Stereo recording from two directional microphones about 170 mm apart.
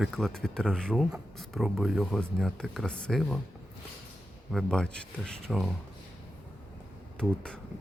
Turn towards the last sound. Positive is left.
turn(degrees=5)  # may be behind; listen again after turning